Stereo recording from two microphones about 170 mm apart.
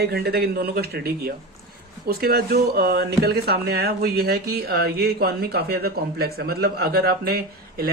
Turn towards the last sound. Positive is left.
turn(degrees=-65)  # may be behind; listen again after turning